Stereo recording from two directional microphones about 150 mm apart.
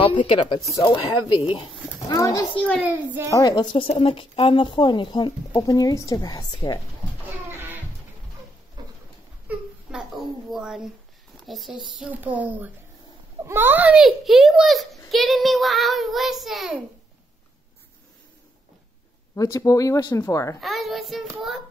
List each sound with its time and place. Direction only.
0.0 s speech: 35° left (ahead or behind)
2.0 s a child's voice: 20° left (ahead or behind)
2.8 s speech: 10° right (ahead or behind)
3.3 s speech: 25° left (ahead or behind)
8.8 s pigeon: 25° right (ahead or behind)
10.5 s a child's voice: 5° right (ahead or behind)
19.3 s speech: 20° left (ahead or behind)
20.6 s a child's voice: centre (ahead or behind)